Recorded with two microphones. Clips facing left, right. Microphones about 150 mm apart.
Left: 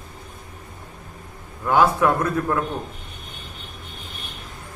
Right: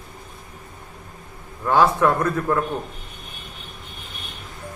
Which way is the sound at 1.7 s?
5° left (ahead or behind).